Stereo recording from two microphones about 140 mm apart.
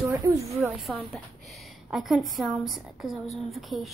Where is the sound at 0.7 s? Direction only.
Centre (ahead or behind).